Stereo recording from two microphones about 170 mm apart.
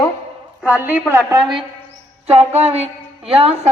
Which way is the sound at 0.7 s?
10° right (ahead or behind).